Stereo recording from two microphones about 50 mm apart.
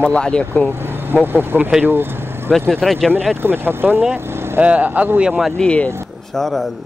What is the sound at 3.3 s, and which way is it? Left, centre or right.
Speech, right.